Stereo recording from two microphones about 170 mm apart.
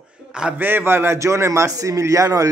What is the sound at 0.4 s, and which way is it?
A man's voice, 10° right (ahead or behind).